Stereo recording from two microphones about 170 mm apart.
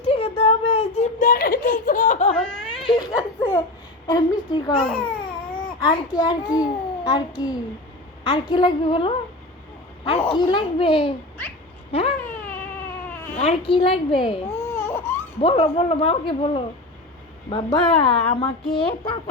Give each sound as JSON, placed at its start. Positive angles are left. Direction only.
{"t": 0.1, "sound": "a sound", "side_deg": 35}
{"t": 1.3, "sound": "giggle", "side_deg": 55}
{"t": 2.3, "sound": "a sound", "side_deg": 5}
{"t": 2.9, "sound": "a sound", "side_deg": 25}
{"t": 4.0, "sound": "a child's voice", "side_deg": 25}
{"t": 4.8, "sound": "speech", "side_deg": 5}
{"t": 5.8, "sound": "a child's voice", "side_deg": 25}
{"t": 11.9, "sound": "a sound", "side_deg": 35}
{"t": 12.3, "sound": "baby cry", "side_deg": 10}
{"t": 13.4, "sound": "speech", "side_deg": 35}
{"t": 14.7, "sound": "baby cry", "side_deg": 15}
{"t": 15.4, "sound": "speech", "side_deg": 35}